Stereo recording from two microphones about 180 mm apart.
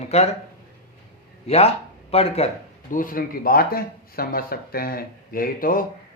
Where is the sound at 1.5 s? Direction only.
35° left (ahead or behind).